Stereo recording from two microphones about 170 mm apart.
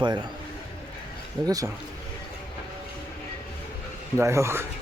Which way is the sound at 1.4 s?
20° right (ahead or behind).